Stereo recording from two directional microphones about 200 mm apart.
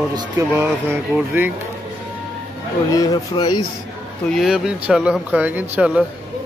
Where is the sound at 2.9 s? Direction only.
20° left (ahead or behind).